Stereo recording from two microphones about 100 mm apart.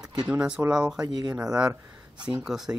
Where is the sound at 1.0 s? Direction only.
35° right (ahead or behind).